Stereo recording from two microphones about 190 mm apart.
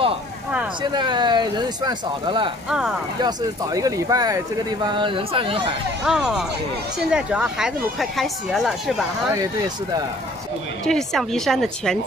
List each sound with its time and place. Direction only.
0.9 s speech: 25° right (ahead or behind)
6.0 s speech: centre (ahead or behind)
10.9 s speech: centre (ahead or behind)